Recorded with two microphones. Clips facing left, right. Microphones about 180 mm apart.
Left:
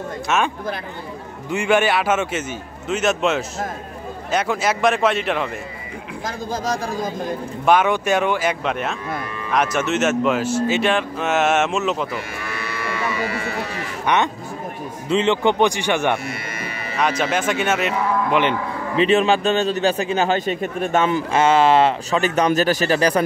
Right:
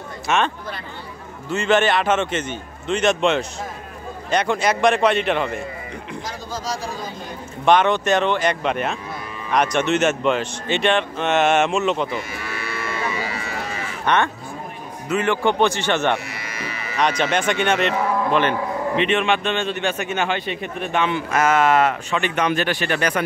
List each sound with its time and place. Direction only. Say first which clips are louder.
0.3 s speech: even; centre (ahead or behind)
1.5 s a man's voice: even; 10° left (ahead or behind)
6.2 s speech: left 6 dB; 50° left (ahead or behind)
7.6 s a man's voice: right 1 dB; 5° left (ahead or behind)
13.2 s speech: left 4 dB; 55° left (ahead or behind)
14.0 s a man's voice: even; 15° left (ahead or behind)
16.3 s music: left 3 dB; 55° left (ahead or behind)
17.2 s speech: even; 5° left (ahead or behind)
19.0 s a man's voice: left 4 dB; 35° left (ahead or behind)
21.3 s a man's voice: left 2 dB; 30° left (ahead or behind)